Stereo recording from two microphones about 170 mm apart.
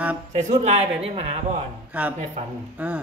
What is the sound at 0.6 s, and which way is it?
Speech, 35° right (ahead or behind).